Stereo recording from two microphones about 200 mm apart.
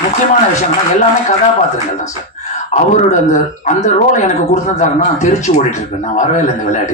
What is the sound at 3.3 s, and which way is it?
Speech, 35° left (ahead or behind).